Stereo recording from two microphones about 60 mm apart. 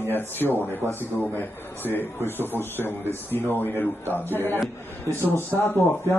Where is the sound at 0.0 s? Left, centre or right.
Left.